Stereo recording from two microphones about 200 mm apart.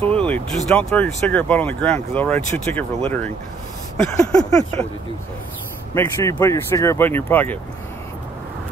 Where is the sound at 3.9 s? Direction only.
5° left (ahead or behind).